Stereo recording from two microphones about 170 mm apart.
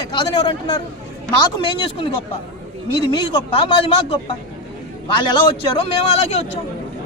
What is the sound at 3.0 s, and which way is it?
A man's voice, 25° left (ahead or behind).